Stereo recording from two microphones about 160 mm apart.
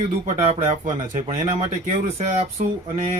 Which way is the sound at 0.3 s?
35° right (ahead or behind).